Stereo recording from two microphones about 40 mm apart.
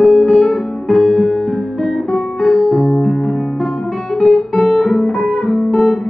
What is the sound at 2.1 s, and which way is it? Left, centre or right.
Music, left.